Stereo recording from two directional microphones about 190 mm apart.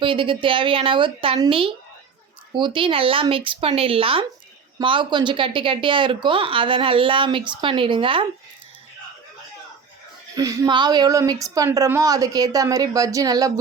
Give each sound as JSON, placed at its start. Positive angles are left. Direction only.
{"t": 0.0, "sound": "speech", "side_deg": -25}
{"t": 10.3, "sound": "speech", "side_deg": -20}